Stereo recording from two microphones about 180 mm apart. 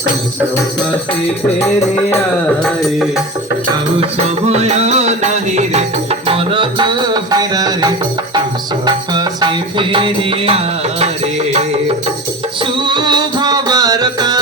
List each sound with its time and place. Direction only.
1.5 s music: 15° left (ahead or behind)
2.6 s music: centre (ahead or behind)
4.0 s music: 35° right (ahead or behind)
12.7 s music: 25° right (ahead or behind)